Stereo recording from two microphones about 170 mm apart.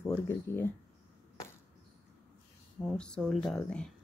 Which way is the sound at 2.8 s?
5° left (ahead or behind).